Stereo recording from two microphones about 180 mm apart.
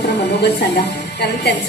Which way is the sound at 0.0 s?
65° left (ahead or behind).